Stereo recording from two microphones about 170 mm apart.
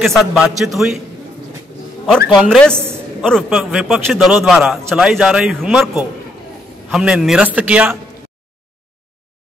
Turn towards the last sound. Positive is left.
turn(degrees=-10)  # may be behind; listen again after turning